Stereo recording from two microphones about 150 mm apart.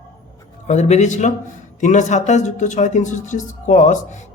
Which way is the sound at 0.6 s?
50° left (ahead or behind).